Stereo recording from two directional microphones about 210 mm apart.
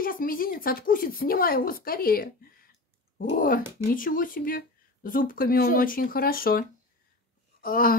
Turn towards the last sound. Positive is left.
turn(degrees=45)  # may be behind; listen again after turning